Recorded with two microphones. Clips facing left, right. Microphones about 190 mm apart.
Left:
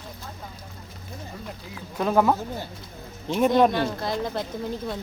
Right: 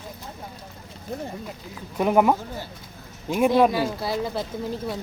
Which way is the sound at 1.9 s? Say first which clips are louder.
Right 2 dB; 15° right (ahead or behind).